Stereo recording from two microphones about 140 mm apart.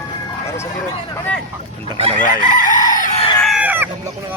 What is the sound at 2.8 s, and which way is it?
Fowl, 70° left (ahead or behind).